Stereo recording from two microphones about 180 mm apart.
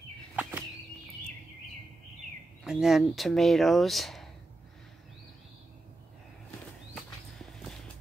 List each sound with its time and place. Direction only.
0.4 s bird flight: 10° right (ahead or behind)
2.6 s speech: 5° right (ahead or behind)
7.0 s walk: centre (ahead or behind)